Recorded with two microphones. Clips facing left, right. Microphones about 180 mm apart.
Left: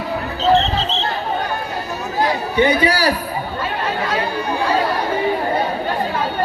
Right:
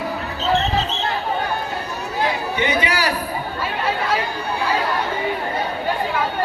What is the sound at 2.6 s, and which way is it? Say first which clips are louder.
Speech: left 7 dB; 35° left (ahead or behind).